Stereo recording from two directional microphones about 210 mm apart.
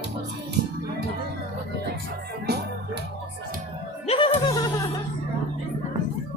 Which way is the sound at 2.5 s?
50° right (ahead or behind).